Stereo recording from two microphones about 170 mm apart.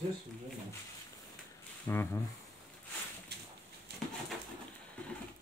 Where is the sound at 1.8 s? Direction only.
15° left (ahead or behind).